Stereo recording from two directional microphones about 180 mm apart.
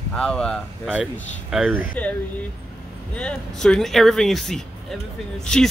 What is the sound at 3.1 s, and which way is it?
A woman's voice, 5° left (ahead or behind).